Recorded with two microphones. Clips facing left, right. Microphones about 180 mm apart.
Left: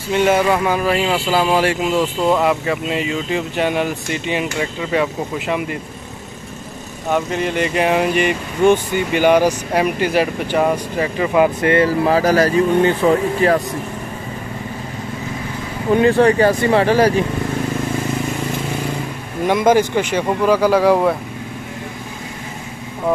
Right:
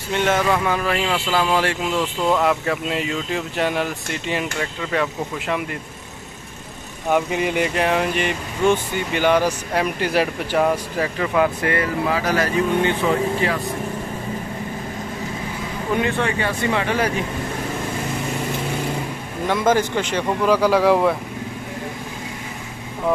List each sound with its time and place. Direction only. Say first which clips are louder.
0.1 s speech: left 4 dB; 10° left (ahead or behind)
7.1 s speech: left 1 dB; 10° right (ahead or behind)
7.7 s speech: left 4 dB; 10° left (ahead or behind)
9.9 s speech: left 3 dB; centre (ahead or behind)
11.3 s speech: left 6 dB; 20° left (ahead or behind)
12.1 s speech: left 6 dB; 40° left (ahead or behind)
16.0 s speech: left 11 dB; 35° left (ahead or behind)
19.4 s speech: left 5 dB; 15° left (ahead or behind)